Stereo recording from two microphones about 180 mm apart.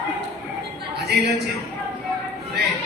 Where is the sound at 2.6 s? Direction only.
65° right (ahead or behind).